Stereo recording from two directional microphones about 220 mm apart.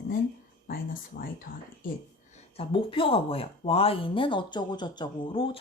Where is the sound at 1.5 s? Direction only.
40° left (ahead or behind).